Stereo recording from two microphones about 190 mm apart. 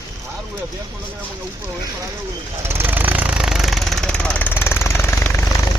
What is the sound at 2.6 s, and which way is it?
Vehicle, 10° right (ahead or behind).